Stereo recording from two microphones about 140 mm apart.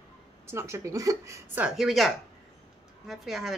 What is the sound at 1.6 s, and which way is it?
Speech, 5° right (ahead or behind).